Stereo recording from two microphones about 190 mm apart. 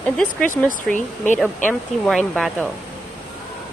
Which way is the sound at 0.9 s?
40° left (ahead or behind).